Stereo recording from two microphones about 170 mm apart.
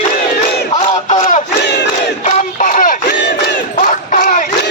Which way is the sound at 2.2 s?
45° left (ahead or behind).